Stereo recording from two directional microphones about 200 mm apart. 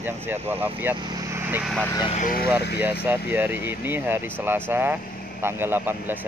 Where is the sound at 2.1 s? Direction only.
45° left (ahead or behind).